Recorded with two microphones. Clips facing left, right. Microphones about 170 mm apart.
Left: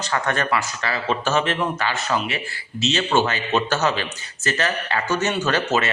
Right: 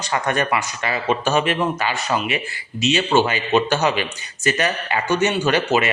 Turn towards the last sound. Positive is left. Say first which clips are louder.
# right 3 dB
turn(degrees=-15)  # may be behind; listen again after turning